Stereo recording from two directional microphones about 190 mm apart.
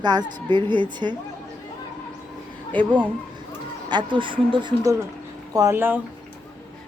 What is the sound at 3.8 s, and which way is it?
Speech, 25° right (ahead or behind).